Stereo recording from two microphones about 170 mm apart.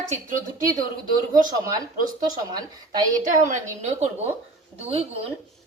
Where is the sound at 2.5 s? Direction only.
25° right (ahead or behind).